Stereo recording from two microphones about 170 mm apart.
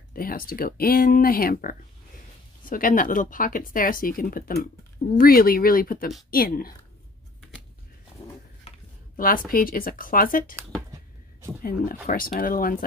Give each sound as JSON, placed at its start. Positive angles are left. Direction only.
{"t": 0.1, "sound": "speech", "side_deg": 60}
{"t": 9.1, "sound": "speech", "side_deg": 55}
{"t": 11.6, "sound": "speech", "side_deg": 55}